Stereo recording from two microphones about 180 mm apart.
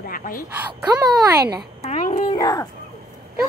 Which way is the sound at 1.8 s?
40° left (ahead or behind).